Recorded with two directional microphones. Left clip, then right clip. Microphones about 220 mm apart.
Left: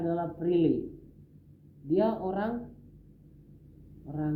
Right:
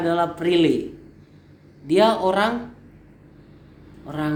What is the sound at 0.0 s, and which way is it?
Speech, 25° right (ahead or behind).